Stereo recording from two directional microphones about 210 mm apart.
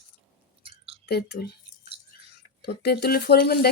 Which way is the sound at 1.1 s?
50° left (ahead or behind).